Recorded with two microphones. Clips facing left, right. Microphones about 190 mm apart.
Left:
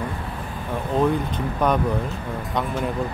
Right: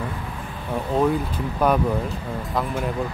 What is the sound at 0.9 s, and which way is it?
Speech, centre (ahead or behind).